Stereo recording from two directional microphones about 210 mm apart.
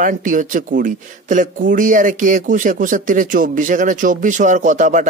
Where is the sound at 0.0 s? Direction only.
40° right (ahead or behind).